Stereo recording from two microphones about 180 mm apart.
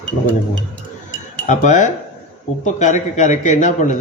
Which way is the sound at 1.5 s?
45° left (ahead or behind).